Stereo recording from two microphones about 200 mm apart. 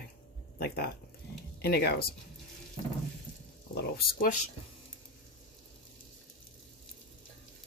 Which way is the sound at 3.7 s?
45° left (ahead or behind).